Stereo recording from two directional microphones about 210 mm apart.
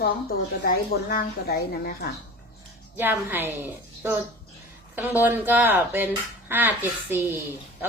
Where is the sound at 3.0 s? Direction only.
10° right (ahead or behind).